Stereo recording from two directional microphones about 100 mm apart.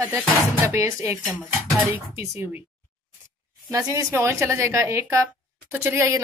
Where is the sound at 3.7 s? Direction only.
25° right (ahead or behind).